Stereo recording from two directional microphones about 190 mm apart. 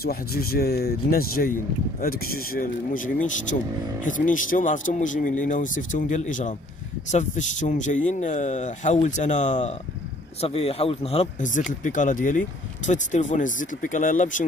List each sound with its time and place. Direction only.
0.0 s speech: 55° left (ahead or behind)